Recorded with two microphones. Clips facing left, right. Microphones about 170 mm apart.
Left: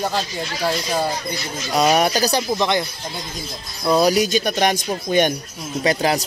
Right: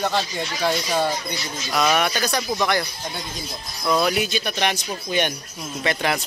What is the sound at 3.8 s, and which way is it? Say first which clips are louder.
Speech: left 5 dB; 30° left (ahead or behind).